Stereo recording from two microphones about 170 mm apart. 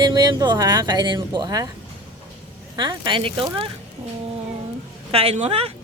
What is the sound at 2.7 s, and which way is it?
Speech, 25° right (ahead or behind).